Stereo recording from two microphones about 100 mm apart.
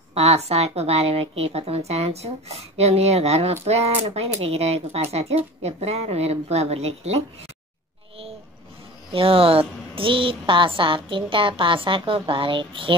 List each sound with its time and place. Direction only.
0.1 s speech: 90° right
9.1 s speech: 70° right (ahead or behind)